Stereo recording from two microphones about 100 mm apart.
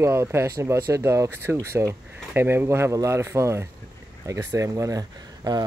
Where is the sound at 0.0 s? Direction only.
25° right (ahead or behind).